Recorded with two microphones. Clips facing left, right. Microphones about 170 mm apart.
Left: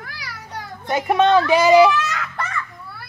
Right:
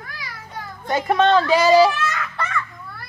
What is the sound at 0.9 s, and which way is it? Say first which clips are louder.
Speech: left 1 dB; 15° left (ahead or behind).